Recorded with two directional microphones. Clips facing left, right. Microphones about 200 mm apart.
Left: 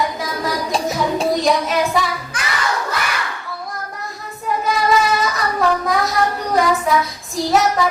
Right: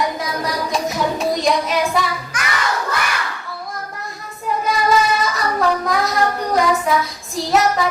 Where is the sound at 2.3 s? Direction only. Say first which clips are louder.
Right 1 dB; 30° left (ahead or behind).